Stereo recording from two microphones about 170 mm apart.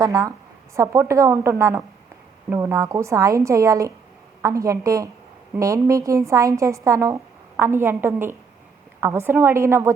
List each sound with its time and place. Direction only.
0.0 s a woman's voice: 20° right (ahead or behind)